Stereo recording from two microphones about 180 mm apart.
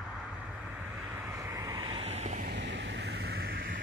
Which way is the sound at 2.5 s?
80° right.